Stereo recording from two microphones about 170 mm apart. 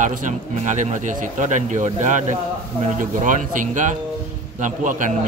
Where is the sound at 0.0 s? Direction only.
50° right (ahead or behind).